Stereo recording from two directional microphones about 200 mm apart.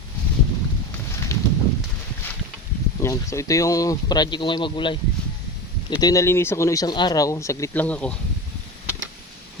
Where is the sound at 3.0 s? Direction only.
15° left (ahead or behind).